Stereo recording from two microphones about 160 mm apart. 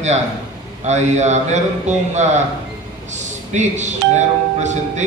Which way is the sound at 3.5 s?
45° right (ahead or behind).